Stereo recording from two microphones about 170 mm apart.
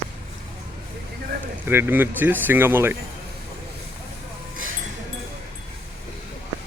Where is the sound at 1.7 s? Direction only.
10° right (ahead or behind).